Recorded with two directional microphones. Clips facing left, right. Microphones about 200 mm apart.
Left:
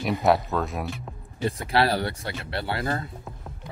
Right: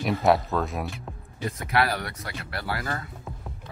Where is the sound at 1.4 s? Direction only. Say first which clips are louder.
Left 2 dB; 30° left (ahead or behind).